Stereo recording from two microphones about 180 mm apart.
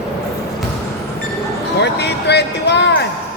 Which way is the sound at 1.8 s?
70° left (ahead or behind).